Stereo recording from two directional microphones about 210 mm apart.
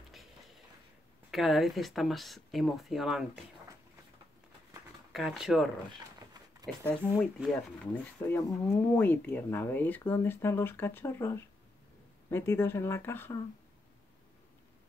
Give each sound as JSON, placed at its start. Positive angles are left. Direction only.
{"t": 1.3, "sound": "speech", "side_deg": 0}
{"t": 5.1, "sound": "speech", "side_deg": 0}
{"t": 5.9, "sound": "a sound", "side_deg": -20}
{"t": 7.0, "sound": "speech", "side_deg": 0}